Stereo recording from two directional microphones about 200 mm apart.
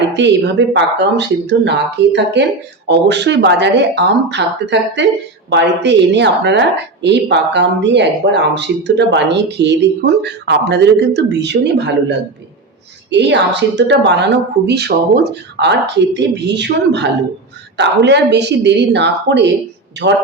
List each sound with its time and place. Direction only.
0.2 s a woman's voice: 60° right (ahead or behind)